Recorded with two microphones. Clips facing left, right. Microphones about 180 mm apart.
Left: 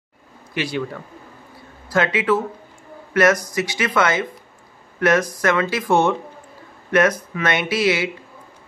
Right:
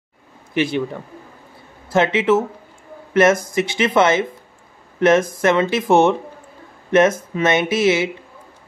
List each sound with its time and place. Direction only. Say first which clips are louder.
0.6 s speech: right 5 dB; 20° right (ahead or behind)
1.9 s a man's voice: right 3 dB; 25° right (ahead or behind)
5.3 s speech: right 3 dB; 25° right (ahead or behind)